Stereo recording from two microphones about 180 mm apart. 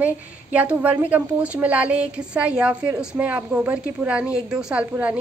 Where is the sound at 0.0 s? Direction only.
5° right (ahead or behind).